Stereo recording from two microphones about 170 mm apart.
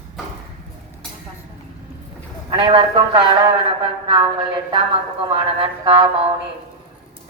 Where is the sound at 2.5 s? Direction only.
30° right (ahead or behind).